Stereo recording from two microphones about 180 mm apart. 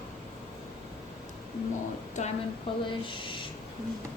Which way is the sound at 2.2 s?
40° left (ahead or behind).